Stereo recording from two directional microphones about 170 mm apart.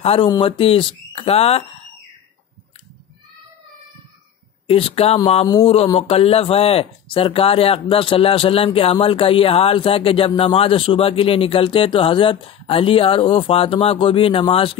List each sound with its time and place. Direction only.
0.0 s speech: 35° left (ahead or behind)
4.6 s speech: 35° left (ahead or behind)